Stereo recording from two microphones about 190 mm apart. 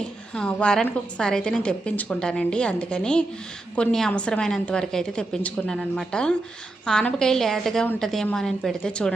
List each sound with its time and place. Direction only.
0.3 s a woman's voice: 5° left (ahead or behind)